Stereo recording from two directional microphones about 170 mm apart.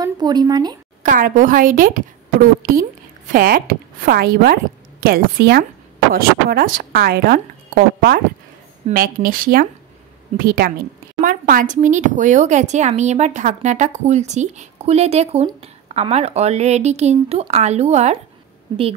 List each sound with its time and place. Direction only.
0.0 s speech: 25° right (ahead or behind)
1.0 s a woman's voice: 50° right (ahead or behind)
3.3 s a woman's voice: 55° right (ahead or behind); by 18.2 s 40° right (ahead or behind)